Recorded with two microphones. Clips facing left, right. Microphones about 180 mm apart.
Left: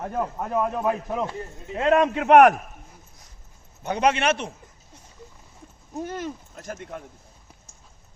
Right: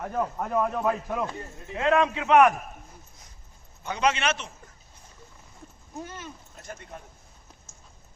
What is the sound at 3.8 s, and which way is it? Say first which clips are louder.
Speech: left 4 dB; 55° left (ahead or behind).